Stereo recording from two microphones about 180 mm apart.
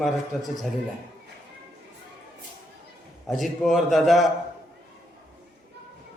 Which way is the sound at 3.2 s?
Centre (ahead or behind).